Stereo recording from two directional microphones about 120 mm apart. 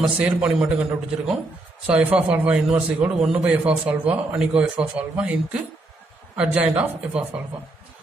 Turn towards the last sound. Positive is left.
turn(degrees=-10)  # may be behind; listen again after turning